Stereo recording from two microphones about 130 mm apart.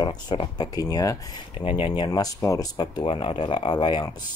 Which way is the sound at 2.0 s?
30° left (ahead or behind).